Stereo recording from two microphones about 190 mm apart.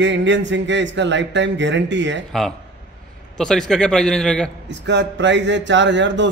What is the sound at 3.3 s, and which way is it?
Speech, 5° left (ahead or behind).